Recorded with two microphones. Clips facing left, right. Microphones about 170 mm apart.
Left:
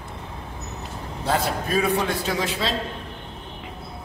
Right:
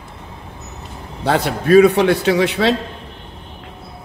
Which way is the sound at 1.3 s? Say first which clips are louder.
Right 9 dB; 70° right (ahead or behind).